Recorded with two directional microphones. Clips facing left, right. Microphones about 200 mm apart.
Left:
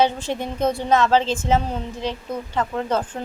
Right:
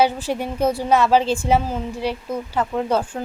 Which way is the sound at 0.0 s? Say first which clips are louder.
Right 1 dB; 10° right (ahead or behind).